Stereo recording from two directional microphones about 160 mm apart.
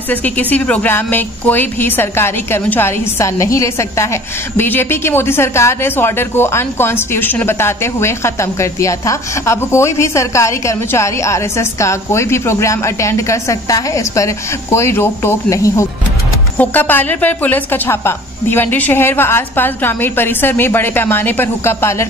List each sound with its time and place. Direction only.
0.1 s a woman's voice: 10° left (ahead or behind)